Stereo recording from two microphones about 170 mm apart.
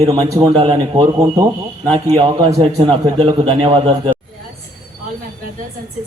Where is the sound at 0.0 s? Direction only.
20° right (ahead or behind).